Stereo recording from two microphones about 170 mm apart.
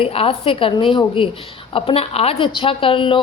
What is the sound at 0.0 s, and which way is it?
A woman's voice, 35° left (ahead or behind).